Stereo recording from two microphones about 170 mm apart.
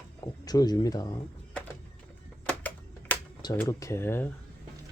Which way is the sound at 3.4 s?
20° left (ahead or behind).